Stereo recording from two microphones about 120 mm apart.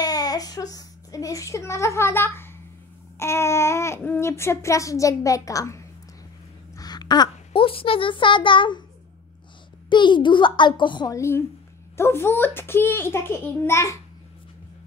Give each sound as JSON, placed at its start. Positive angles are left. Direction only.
{"t": 0.0, "sound": "a sound", "side_deg": 30}
{"t": 3.2, "sound": "a child's voice", "side_deg": 20}
{"t": 9.8, "sound": "a child's voice", "side_deg": 40}
{"t": 11.1, "sound": "speech", "side_deg": 20}